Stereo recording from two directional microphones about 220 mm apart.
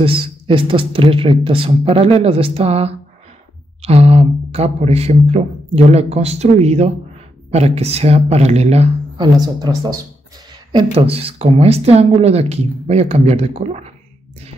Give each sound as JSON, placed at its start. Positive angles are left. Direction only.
{"t": 0.0, "sound": "speech", "side_deg": -25}
{"t": 10.7, "sound": "speech", "side_deg": -25}